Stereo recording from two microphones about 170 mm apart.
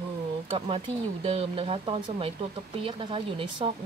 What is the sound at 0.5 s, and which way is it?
Speech, 35° right (ahead or behind).